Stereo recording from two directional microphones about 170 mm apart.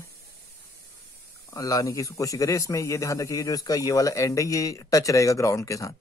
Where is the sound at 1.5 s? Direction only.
20° left (ahead or behind).